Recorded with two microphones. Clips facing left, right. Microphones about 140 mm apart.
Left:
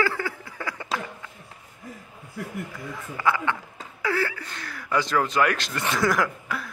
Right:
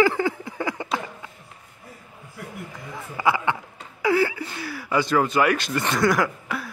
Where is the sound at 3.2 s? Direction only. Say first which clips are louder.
Right 2 dB; 10° right (ahead or behind).